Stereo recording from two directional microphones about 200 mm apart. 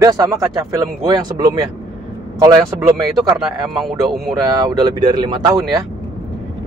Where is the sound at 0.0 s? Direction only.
15° right (ahead or behind).